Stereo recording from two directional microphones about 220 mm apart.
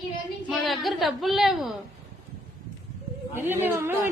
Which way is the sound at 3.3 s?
10° right (ahead or behind).